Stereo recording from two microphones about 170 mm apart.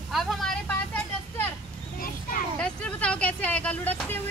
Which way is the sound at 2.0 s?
55° left (ahead or behind).